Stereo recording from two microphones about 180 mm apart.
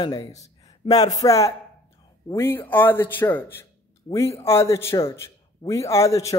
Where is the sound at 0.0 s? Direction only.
20° left (ahead or behind).